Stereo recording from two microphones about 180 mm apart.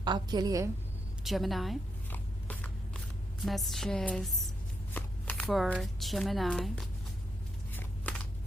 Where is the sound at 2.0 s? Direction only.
10° left (ahead or behind).